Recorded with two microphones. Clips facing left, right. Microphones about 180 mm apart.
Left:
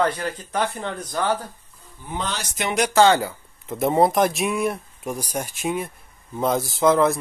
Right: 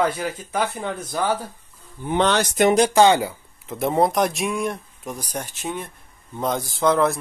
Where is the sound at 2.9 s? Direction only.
15° right (ahead or behind).